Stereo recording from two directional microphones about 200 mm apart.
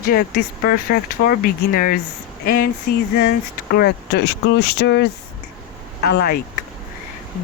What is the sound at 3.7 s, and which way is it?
Speech, 50° left (ahead or behind).